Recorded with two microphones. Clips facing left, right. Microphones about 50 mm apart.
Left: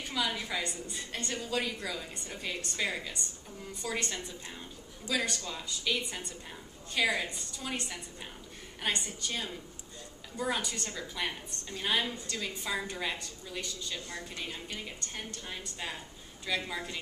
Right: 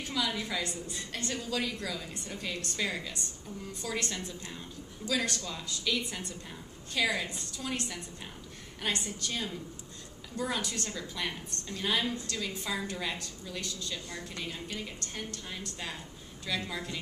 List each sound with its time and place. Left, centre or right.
0.0 s a woman's voice: centre
5.0 s a woman's voice: centre
14.3 s a woman's voice: centre